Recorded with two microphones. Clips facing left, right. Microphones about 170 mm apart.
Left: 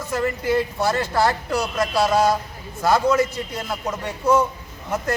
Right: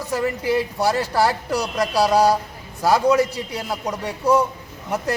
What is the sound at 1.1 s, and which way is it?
Speech, 10° right (ahead or behind).